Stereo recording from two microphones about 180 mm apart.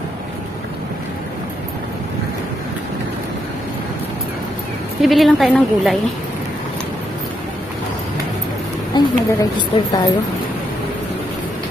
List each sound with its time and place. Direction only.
5.0 s a woman's voice: centre (ahead or behind)
8.9 s a woman's voice: 25° left (ahead or behind)